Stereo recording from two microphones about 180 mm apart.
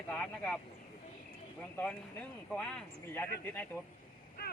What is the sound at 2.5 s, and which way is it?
Speech, 5° left (ahead or behind).